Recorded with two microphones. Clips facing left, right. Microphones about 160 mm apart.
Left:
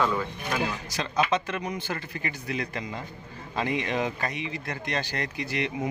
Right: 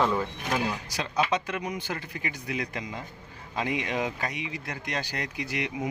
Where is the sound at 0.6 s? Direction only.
10° right (ahead or behind).